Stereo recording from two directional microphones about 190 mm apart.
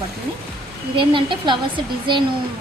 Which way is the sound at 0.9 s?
25° right (ahead or behind).